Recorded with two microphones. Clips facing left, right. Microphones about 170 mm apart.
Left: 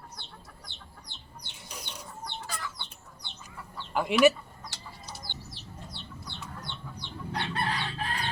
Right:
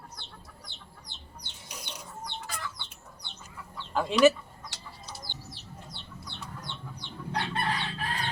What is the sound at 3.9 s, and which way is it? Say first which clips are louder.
Speech: right 1 dB; 10° left (ahead or behind).